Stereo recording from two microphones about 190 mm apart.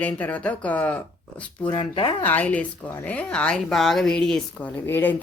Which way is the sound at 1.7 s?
25° left (ahead or behind).